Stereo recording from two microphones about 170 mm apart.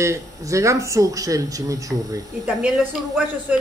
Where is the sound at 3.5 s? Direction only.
10° right (ahead or behind).